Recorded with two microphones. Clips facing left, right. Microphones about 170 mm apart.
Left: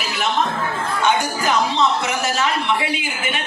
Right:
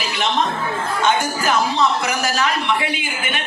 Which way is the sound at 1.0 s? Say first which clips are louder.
Even; 20° left (ahead or behind).